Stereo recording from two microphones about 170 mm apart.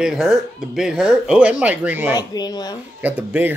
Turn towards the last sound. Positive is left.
turn(degrees=-10)  # may be behind; listen again after turning